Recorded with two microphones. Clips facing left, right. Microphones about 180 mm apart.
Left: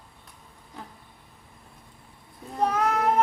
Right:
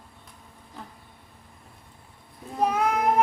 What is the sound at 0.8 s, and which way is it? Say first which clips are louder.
Insect: even; centre (ahead or behind).